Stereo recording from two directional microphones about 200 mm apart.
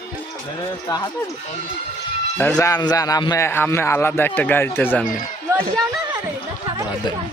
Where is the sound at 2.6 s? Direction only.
20° left (ahead or behind).